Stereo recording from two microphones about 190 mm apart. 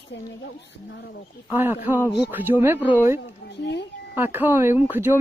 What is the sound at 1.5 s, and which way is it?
Speech, 10° right (ahead or behind).